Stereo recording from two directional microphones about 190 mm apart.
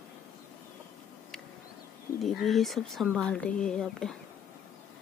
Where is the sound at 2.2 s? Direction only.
Centre (ahead or behind).